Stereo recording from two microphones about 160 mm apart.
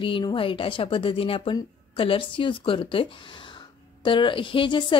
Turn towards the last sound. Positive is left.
turn(degrees=30)  # may be behind; listen again after turning